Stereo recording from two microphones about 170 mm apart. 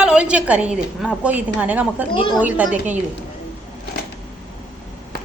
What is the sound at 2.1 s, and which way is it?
Speech, 30° left (ahead or behind).